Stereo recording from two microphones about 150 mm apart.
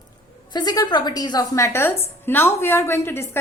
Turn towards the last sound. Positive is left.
turn(degrees=15)  # may be behind; listen again after turning